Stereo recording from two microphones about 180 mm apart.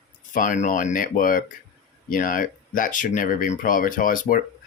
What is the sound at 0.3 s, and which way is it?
Speech, 45° left (ahead or behind).